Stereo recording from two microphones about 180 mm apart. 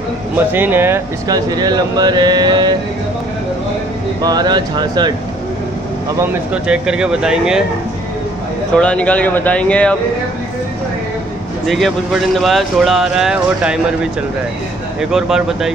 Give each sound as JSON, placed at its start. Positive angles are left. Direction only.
{"t": 0.5, "sound": "speech", "side_deg": -10}
{"t": 4.2, "sound": "speech", "side_deg": -20}
{"t": 6.1, "sound": "speech", "side_deg": -5}
{"t": 8.7, "sound": "speech", "side_deg": 5}
{"t": 11.6, "sound": "speech", "side_deg": 0}
{"t": 15.0, "sound": "speech", "side_deg": -5}